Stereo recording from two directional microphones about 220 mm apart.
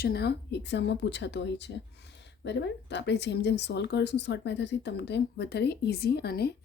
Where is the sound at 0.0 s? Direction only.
45° left (ahead or behind).